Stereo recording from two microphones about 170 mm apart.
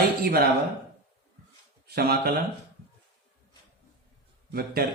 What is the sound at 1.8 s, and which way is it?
Speech, 65° right (ahead or behind).